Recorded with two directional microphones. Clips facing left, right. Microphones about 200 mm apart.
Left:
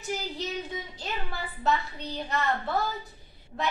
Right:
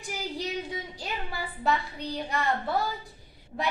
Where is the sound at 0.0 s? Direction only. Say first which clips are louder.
Left 1 dB; 10° right (ahead or behind).